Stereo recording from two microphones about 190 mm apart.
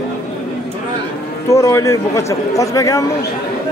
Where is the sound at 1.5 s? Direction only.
15° left (ahead or behind).